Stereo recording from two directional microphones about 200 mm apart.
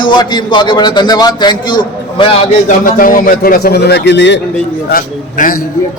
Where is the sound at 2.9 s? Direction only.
45° left (ahead or behind); by 4.4 s 60° left (ahead or behind).